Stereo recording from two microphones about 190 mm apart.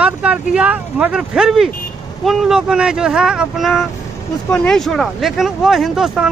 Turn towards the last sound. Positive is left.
turn(degrees=0)  # may be behind; listen again after turning